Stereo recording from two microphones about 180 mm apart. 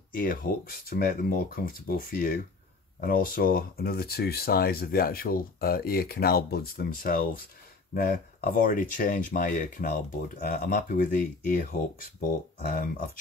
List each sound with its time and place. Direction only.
0.1 s speech: 50° left (ahead or behind)